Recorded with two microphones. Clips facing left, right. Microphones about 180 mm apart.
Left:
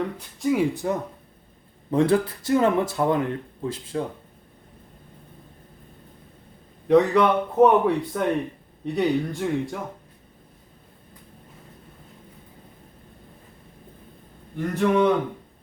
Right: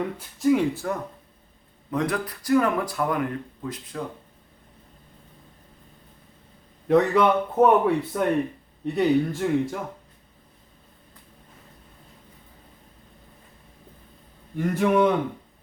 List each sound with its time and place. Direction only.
0.0 s a man's voice: centre (ahead or behind)
0.7 s speech: 20° left (ahead or behind)
1.9 s speech: 30° left (ahead or behind)
6.8 s a man's voice: centre (ahead or behind)
14.8 s a man's voice: 5° right (ahead or behind)